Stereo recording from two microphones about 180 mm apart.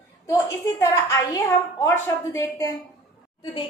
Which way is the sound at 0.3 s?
15° left (ahead or behind).